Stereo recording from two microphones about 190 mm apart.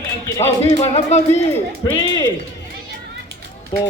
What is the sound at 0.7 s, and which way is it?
Music, 35° left (ahead or behind).